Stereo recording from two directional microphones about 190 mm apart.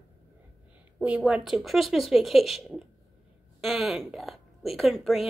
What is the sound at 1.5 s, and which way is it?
A woman's voice, centre (ahead or behind).